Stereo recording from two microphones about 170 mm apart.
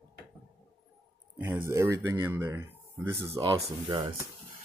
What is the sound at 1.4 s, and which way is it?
Speech, 15° right (ahead or behind).